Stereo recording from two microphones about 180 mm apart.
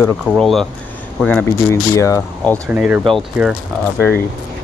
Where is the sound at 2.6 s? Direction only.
5° right (ahead or behind).